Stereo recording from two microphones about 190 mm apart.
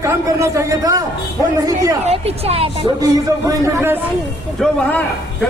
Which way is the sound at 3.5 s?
15° right (ahead or behind).